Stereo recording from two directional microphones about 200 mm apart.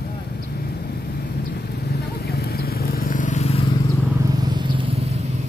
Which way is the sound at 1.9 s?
55° left (ahead or behind).